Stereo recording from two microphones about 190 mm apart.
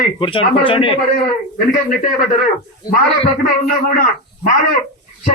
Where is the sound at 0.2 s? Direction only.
25° left (ahead or behind).